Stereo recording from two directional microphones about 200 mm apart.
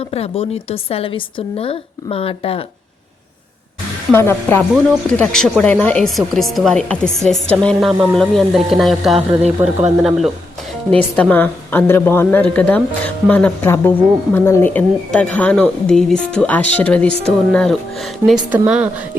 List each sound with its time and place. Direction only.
0.1 s a woman's voice: 30° left (ahead or behind)
4.1 s a woman's voice: 10° left (ahead or behind); by 19.0 s 5° right (ahead or behind)